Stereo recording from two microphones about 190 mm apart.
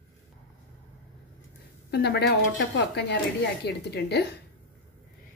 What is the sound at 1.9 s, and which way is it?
Speech, 60° left (ahead or behind).